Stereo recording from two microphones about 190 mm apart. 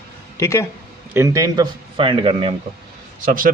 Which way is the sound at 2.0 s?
30° right (ahead or behind).